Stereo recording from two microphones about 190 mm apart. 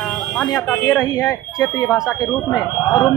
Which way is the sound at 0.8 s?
10° left (ahead or behind).